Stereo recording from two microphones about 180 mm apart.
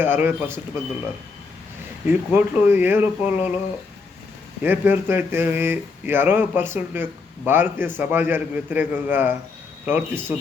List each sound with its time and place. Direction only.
0.0 s speech: 10° right (ahead or behind)
2.0 s speech: 10° right (ahead or behind)
4.6 s speech: 10° right (ahead or behind)